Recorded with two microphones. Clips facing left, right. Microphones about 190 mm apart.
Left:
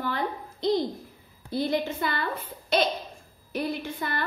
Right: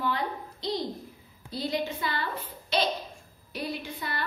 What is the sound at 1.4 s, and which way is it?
A woman's voice, 50° left (ahead or behind).